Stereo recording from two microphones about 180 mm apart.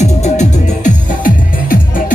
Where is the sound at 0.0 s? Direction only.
40° left (ahead or behind).